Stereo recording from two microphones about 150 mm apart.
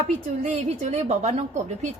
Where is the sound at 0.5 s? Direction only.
50° right (ahead or behind).